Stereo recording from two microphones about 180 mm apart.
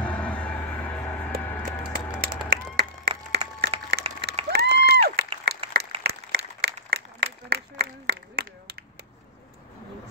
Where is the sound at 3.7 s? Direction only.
35° right (ahead or behind).